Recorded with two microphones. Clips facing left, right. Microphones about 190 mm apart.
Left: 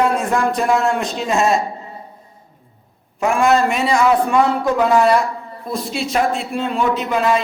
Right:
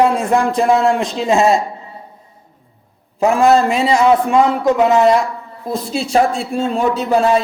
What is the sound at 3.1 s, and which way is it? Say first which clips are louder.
A man's voice: right 4 dB; 30° right (ahead or behind).